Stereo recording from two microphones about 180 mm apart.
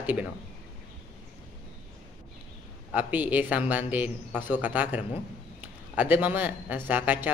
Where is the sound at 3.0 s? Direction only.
10° right (ahead or behind).